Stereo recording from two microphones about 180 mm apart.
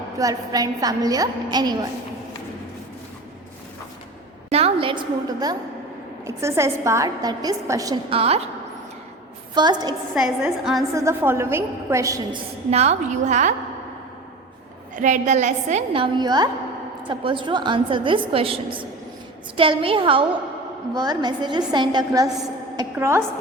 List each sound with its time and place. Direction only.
0.2 s a woman's voice: 20° right (ahead or behind)
4.4 s a woman's voice: 35° right (ahead or behind)
8.1 s a woman's voice: 35° right (ahead or behind)
9.6 s a woman's voice: 25° right (ahead or behind)
10.2 s a woman's voice: centre (ahead or behind)
10.9 s a woman's voice: 15° right (ahead or behind)
12.7 s a woman's voice: 35° right (ahead or behind)
14.9 s a woman's voice: 45° right (ahead or behind); by 23.2 s 15° right (ahead or behind)